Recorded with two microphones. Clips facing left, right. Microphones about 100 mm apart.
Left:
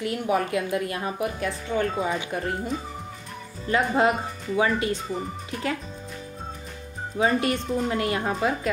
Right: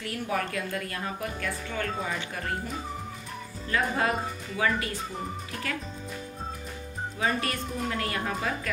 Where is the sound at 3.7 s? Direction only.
20° left (ahead or behind).